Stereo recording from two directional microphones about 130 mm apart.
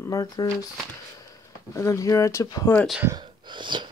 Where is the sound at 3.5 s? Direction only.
35° right (ahead or behind).